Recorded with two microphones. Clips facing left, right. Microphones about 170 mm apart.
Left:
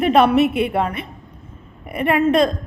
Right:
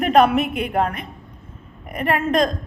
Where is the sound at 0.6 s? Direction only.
40° right (ahead or behind).